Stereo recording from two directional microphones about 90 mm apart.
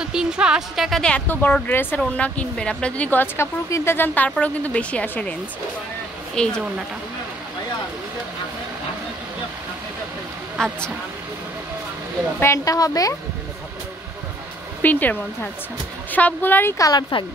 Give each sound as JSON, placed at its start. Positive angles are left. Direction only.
{"t": 0.0, "sound": "speech", "side_deg": -10}
{"t": 1.3, "sound": "a woman's voice", "side_deg": 20}
{"t": 6.4, "sound": "speech", "side_deg": 10}
{"t": 10.6, "sound": "speech", "side_deg": 5}
{"t": 12.6, "sound": "speech", "side_deg": 40}
{"t": 14.8, "sound": "a woman's voice", "side_deg": 20}
{"t": 16.7, "sound": "speech", "side_deg": 40}